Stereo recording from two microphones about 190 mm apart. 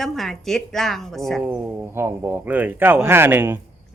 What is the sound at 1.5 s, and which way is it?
Speech, 10° right (ahead or behind).